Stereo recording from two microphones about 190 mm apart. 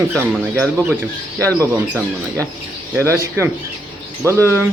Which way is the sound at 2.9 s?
15° right (ahead or behind).